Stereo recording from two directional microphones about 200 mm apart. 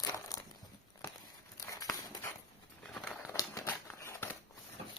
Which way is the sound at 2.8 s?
5° left (ahead or behind).